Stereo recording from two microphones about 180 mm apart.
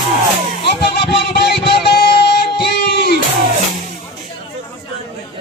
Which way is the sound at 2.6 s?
65° left (ahead or behind).